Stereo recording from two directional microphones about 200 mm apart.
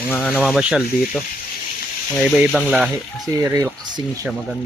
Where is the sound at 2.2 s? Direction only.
5° right (ahead or behind).